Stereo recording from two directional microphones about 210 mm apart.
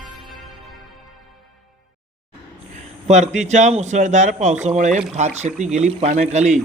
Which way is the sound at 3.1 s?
35° right (ahead or behind).